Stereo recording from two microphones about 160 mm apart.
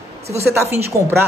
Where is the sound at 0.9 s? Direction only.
20° right (ahead or behind).